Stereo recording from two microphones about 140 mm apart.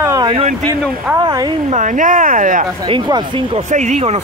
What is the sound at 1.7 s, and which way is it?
Speech, 65° right (ahead or behind).